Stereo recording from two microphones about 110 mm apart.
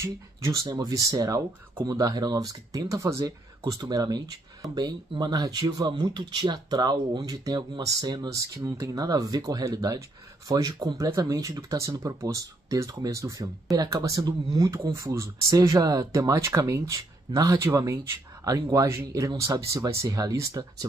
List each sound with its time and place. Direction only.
0.0 s speech: 30° right (ahead or behind)